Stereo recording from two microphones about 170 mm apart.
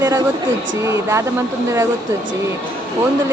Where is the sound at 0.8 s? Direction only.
15° right (ahead or behind).